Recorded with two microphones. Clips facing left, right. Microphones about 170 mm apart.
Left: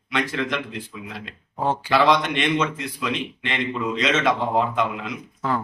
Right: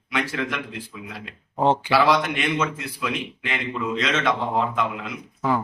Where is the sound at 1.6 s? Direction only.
20° right (ahead or behind).